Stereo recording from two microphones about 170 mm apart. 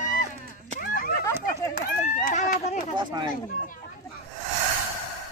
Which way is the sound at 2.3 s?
50° left (ahead or behind).